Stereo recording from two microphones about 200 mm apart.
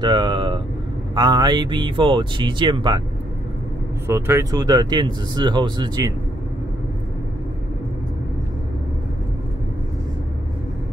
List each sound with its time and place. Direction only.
0.0 s speech: 20° right (ahead or behind)
4.1 s speech: 15° right (ahead or behind)